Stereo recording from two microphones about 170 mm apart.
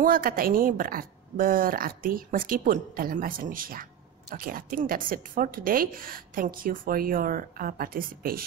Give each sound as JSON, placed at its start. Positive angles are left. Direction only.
{"t": 0.0, "sound": "a woman's voice", "side_deg": -55}